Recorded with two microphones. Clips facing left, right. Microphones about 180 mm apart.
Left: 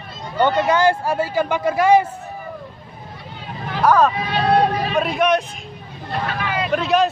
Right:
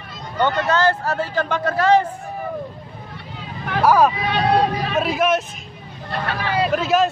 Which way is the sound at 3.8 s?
10° right (ahead or behind).